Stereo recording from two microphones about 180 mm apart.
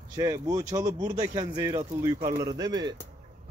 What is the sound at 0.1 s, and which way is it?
Speech, 20° right (ahead or behind).